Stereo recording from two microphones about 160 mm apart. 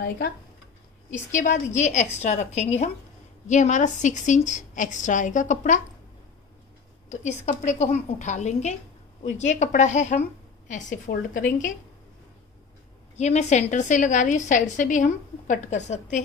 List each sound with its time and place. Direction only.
1.1 s a woman's voice: 50° left (ahead or behind)
7.1 s a woman's voice: 50° left (ahead or behind)
13.1 s a woman's voice: 45° left (ahead or behind)